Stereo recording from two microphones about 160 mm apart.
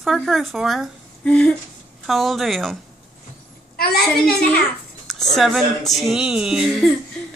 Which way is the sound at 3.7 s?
70° left (ahead or behind).